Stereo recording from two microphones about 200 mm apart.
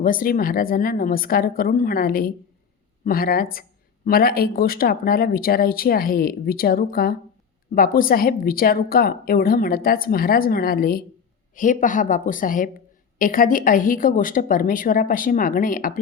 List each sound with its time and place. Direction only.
0.0 s a woman's voice: 45° left (ahead or behind)